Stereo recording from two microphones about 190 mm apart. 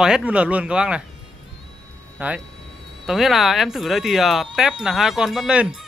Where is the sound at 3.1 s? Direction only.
Centre (ahead or behind).